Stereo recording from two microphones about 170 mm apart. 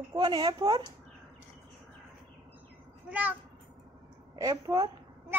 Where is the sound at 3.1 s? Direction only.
10° right (ahead or behind).